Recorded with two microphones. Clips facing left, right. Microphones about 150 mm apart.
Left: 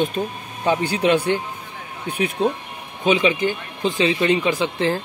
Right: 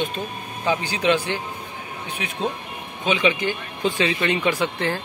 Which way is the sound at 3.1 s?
40° left (ahead or behind).